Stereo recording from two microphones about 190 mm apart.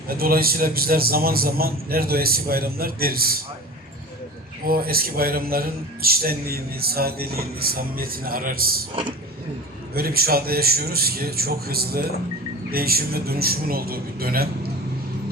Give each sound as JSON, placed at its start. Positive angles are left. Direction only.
{"t": 0.1, "sound": "speech", "side_deg": -50}
{"t": 4.6, "sound": "speech", "side_deg": -50}
{"t": 9.9, "sound": "speech", "side_deg": -50}